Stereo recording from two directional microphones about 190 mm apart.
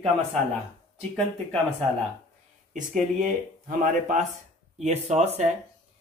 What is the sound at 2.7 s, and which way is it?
Speech, 40° right (ahead or behind).